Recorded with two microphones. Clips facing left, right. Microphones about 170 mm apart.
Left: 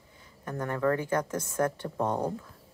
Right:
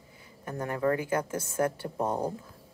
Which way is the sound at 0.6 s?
20° right (ahead or behind).